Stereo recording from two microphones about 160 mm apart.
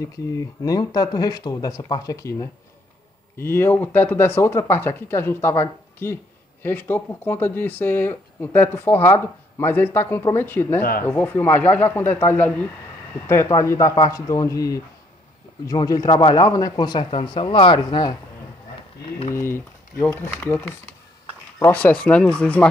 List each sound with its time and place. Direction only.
0.0 s speech: 20° left (ahead or behind)
10.8 s speech: 65° left (ahead or behind)
11.1 s speech: 15° left (ahead or behind); by 18.1 s 30° left (ahead or behind)
19.3 s speech: 15° left (ahead or behind)